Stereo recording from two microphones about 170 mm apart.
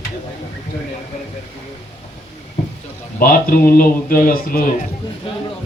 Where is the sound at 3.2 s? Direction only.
60° left (ahead or behind).